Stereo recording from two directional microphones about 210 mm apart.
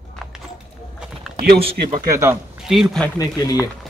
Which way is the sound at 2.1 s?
15° right (ahead or behind).